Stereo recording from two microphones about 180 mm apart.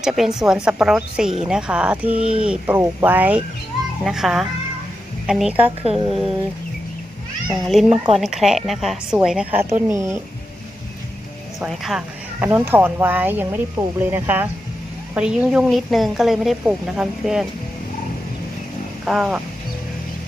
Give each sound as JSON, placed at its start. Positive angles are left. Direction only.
{"t": 0.0, "sound": "a woman's voice", "side_deg": 0}
{"t": 7.4, "sound": "a child's voice", "side_deg": 0}
{"t": 11.6, "sound": "a woman's voice", "side_deg": 0}
{"t": 12.4, "sound": "a woman's voice", "side_deg": -10}
{"t": 19.0, "sound": "a woman's voice", "side_deg": -5}